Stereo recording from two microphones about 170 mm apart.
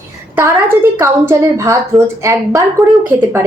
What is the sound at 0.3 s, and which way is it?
A woman's voice, 15° right (ahead or behind).